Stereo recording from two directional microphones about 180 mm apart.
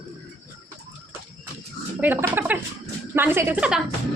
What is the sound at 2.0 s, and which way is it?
A woman's voice, 10° right (ahead or behind).